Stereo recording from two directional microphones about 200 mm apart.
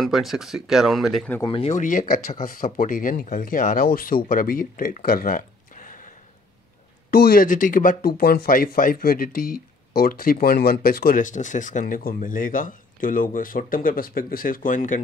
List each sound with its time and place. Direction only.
0.0 s speech: centre (ahead or behind)
1.4 s speech: 30° left (ahead or behind)